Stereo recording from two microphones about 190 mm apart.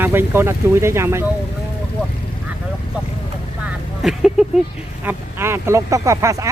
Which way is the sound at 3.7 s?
Centre (ahead or behind).